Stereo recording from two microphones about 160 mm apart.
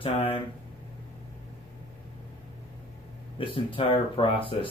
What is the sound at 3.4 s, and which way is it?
Speech, 30° left (ahead or behind).